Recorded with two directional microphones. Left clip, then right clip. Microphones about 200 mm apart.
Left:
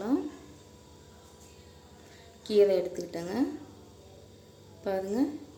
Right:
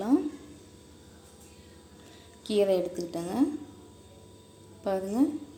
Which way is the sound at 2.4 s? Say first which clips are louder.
Left 2 dB; 5° left (ahead or behind).